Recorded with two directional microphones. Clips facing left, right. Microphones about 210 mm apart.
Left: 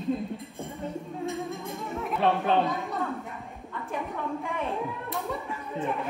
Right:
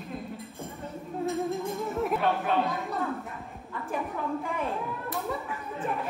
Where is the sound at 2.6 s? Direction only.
Centre (ahead or behind).